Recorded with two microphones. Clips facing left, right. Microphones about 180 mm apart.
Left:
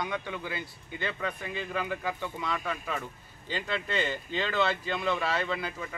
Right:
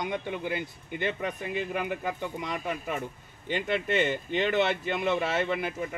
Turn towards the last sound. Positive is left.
turn(degrees=-20)  # may be behind; listen again after turning